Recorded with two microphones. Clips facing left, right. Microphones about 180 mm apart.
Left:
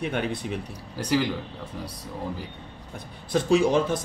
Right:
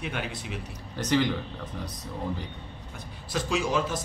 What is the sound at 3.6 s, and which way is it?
Speech, 55° left (ahead or behind).